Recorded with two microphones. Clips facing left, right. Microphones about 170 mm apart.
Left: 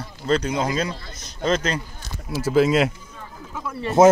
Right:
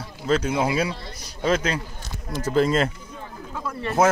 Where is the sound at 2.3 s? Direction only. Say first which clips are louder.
Left 3 dB; 5° left (ahead or behind).